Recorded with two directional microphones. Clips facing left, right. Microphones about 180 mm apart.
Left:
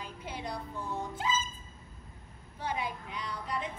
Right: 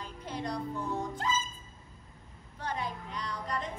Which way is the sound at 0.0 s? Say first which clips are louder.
Right 2 dB; 5° left (ahead or behind).